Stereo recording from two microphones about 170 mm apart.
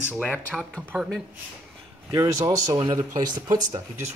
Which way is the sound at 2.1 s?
20° right (ahead or behind).